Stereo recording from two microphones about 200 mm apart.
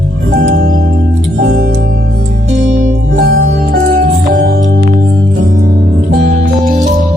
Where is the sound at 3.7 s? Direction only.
45° right (ahead or behind).